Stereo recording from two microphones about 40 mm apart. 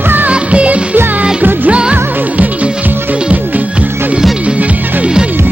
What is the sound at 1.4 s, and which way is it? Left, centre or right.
Music, right.